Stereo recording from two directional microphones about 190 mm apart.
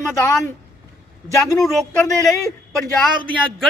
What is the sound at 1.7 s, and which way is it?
Speech, centre (ahead or behind).